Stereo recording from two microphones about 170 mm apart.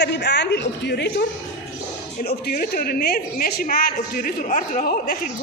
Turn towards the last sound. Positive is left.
turn(degrees=55)  # may be behind; listen again after turning